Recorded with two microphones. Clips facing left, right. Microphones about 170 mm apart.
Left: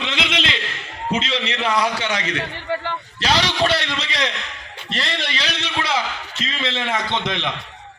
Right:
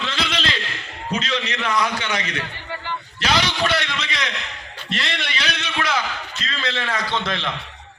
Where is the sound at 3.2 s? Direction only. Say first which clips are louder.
Left 2 dB; 35° left (ahead or behind).